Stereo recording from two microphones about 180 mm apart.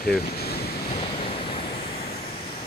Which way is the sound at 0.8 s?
30° left (ahead or behind).